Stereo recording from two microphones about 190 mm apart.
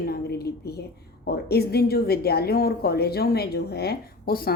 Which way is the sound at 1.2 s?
55° left (ahead or behind).